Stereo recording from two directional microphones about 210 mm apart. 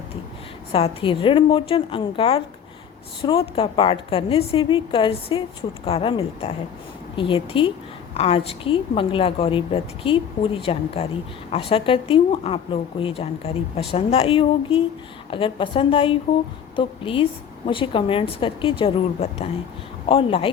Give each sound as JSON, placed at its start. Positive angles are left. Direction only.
{"t": 0.7, "sound": "a woman's voice", "side_deg": 25}